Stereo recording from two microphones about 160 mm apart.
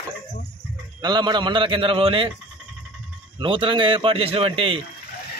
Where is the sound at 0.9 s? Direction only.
25° right (ahead or behind).